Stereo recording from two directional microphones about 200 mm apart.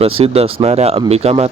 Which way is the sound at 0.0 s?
30° right (ahead or behind).